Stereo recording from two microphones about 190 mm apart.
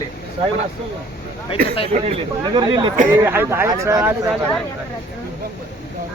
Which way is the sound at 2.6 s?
25° right (ahead or behind).